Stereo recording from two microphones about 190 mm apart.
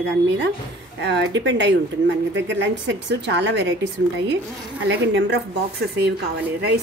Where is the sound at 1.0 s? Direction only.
70° right (ahead or behind).